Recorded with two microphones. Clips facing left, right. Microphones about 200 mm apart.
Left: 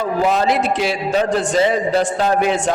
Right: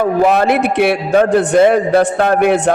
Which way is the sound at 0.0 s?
60° right (ahead or behind).